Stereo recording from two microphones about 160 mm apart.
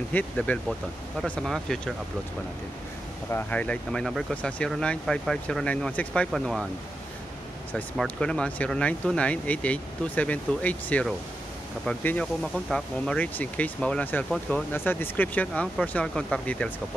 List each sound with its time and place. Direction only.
0.1 s speech: 5° left (ahead or behind)
3.3 s speech: 10° left (ahead or behind)
7.7 s speech: 5° left (ahead or behind)